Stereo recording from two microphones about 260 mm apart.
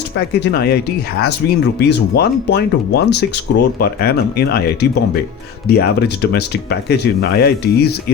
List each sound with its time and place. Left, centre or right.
0.3 s speech: left